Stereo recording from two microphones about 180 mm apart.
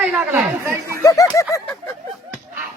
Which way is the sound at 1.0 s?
20° left (ahead or behind).